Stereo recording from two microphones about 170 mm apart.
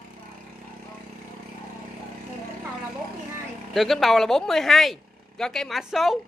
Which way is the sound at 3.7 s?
Centre (ahead or behind).